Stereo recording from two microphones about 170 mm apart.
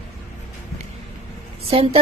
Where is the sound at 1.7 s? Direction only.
35° right (ahead or behind).